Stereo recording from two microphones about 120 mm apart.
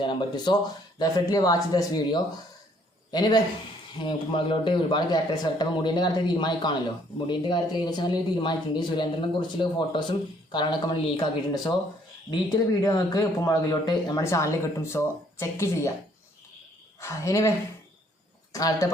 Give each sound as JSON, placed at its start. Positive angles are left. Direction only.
{"t": 0.0, "sound": "speech", "side_deg": 45}
{"t": 12.3, "sound": "speech", "side_deg": 35}
{"t": 17.0, "sound": "speech", "side_deg": 25}
{"t": 18.5, "sound": "speech", "side_deg": 30}